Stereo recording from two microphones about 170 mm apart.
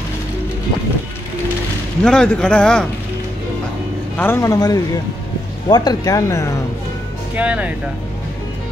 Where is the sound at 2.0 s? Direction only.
5° left (ahead or behind).